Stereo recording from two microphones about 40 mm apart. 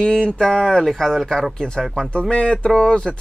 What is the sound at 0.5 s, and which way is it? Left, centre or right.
Speech, centre.